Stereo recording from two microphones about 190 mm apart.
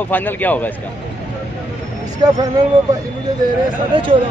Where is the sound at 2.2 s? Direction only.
25° right (ahead or behind).